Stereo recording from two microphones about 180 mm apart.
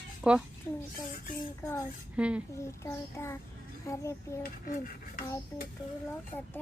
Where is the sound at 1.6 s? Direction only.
15° left (ahead or behind).